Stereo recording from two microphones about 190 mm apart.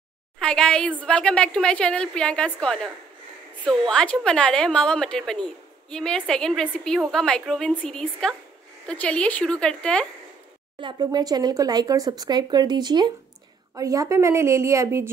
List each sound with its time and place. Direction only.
0.4 s a woman's voice: 5° left (ahead or behind)
10.8 s a woman's voice: 25° right (ahead or behind)